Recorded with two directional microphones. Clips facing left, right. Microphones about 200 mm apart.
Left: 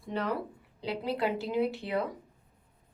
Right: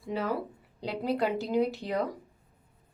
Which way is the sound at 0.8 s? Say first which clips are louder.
Right 2 dB; 45° right (ahead or behind).